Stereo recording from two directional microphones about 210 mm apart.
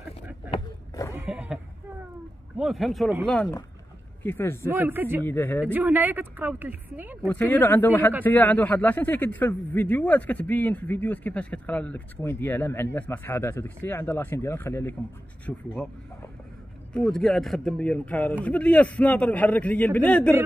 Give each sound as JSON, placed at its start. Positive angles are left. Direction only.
{"t": 1.1, "sound": "bleat", "side_deg": -5}
{"t": 2.5, "sound": "speech", "side_deg": 0}
{"t": 4.2, "sound": "a man's voice", "side_deg": 10}
{"t": 4.6, "sound": "speech", "side_deg": -10}
{"t": 5.2, "sound": "a man's voice", "side_deg": 10}
{"t": 5.7, "sound": "speech", "side_deg": -10}
{"t": 7.2, "sound": "a man's voice", "side_deg": 10}
{"t": 16.9, "sound": "a man's voice", "side_deg": 0}